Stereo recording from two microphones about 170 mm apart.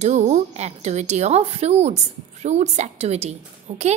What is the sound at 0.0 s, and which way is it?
A woman's voice, 45° right (ahead or behind).